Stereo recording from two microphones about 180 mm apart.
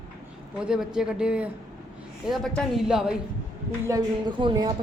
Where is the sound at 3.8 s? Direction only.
20° right (ahead or behind).